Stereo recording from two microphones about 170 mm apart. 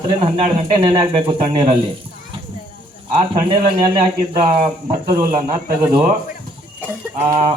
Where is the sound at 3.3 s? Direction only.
30° right (ahead or behind).